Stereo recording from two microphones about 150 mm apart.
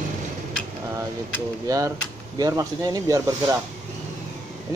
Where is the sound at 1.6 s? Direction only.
20° right (ahead or behind).